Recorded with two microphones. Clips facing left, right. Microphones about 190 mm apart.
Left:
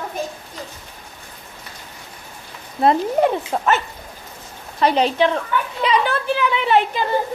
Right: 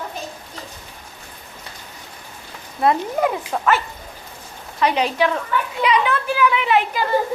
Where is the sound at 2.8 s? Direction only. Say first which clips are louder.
Left 2 dB; 30° left (ahead or behind).